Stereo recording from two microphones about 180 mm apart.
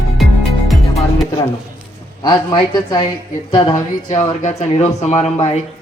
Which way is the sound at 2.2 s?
25° left (ahead or behind).